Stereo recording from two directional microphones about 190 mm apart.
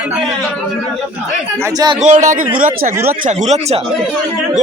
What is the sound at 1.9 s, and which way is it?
Speech, 40° right (ahead or behind).